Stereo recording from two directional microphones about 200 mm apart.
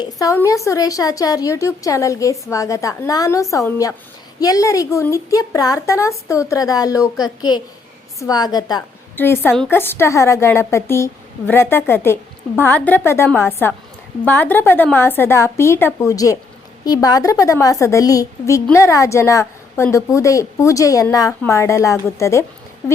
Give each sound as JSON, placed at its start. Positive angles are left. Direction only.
{"t": 0.0, "sound": "a woman's voice", "side_deg": 15}